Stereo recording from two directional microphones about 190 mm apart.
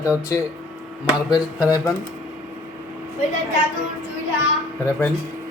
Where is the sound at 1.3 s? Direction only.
20° left (ahead or behind).